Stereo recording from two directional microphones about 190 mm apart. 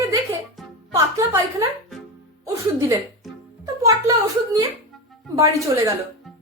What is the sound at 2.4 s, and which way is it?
Music, 15° right (ahead or behind).